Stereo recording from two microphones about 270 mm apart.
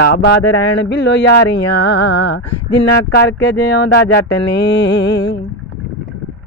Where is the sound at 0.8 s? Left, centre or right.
Left.